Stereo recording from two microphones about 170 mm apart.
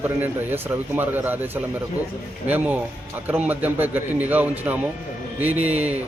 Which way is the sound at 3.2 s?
10° right (ahead or behind).